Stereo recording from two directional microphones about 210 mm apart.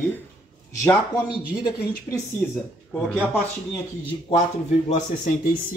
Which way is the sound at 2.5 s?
Centre (ahead or behind).